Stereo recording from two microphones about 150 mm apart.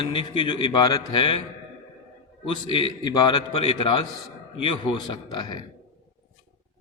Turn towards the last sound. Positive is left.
turn(degrees=35)  # may be behind; listen again after turning